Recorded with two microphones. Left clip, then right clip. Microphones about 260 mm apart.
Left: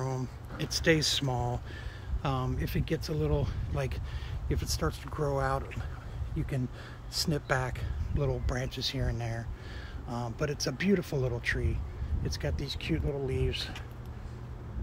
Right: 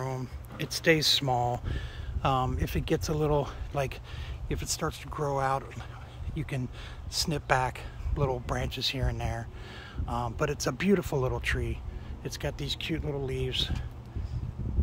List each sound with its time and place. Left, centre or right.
0.6 s speech: centre